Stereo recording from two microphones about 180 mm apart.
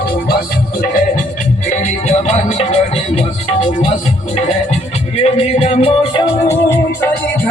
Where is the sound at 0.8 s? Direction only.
50° left (ahead or behind); by 3.9 s 30° left (ahead or behind).